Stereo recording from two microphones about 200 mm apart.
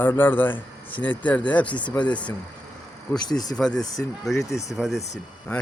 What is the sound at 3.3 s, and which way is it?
Speech, 20° left (ahead or behind).